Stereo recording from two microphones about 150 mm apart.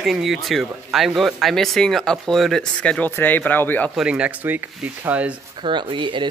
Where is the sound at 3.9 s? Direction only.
5° right (ahead or behind).